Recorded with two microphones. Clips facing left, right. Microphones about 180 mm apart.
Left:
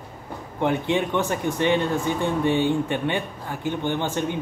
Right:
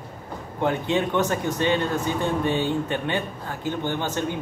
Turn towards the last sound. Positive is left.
turn(degrees=15)  # may be behind; listen again after turning